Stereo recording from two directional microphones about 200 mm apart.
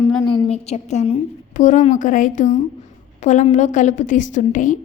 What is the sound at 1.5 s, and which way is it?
A woman's voice, 40° left (ahead or behind).